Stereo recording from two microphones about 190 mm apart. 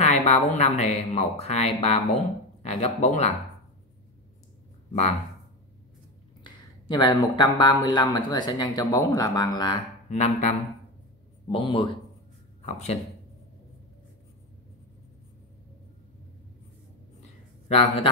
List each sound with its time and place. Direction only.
0.0 s speech: 35° left (ahead or behind)
6.4 s speech: 20° left (ahead or behind)
10.0 s speech: 35° left (ahead or behind)
11.4 s speech: 25° left (ahead or behind)
12.6 s speech: 35° left (ahead or behind)
17.6 s speech: 30° left (ahead or behind)